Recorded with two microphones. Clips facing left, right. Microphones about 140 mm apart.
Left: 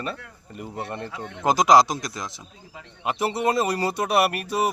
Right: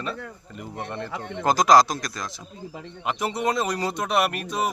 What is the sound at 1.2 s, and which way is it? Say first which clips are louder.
A man's voice: left 1 dB; 20° left (ahead or behind).